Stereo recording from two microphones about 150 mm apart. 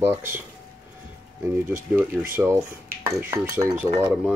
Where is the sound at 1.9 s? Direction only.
15° right (ahead or behind).